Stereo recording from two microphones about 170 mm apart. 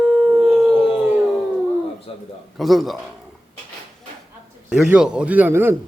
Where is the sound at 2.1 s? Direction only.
35° left (ahead or behind).